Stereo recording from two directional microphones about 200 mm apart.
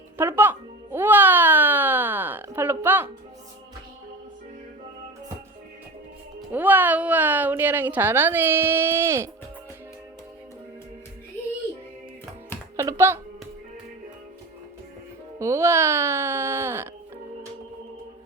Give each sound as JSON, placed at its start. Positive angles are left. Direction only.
{"t": 0.2, "sound": "music", "side_deg": -10}
{"t": 6.5, "sound": "a woman's voice", "side_deg": -10}
{"t": 12.7, "sound": "music", "side_deg": -15}
{"t": 15.4, "sound": "a woman's voice", "side_deg": -15}